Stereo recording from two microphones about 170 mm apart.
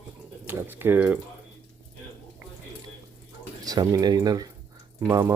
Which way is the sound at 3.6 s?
20° right (ahead or behind).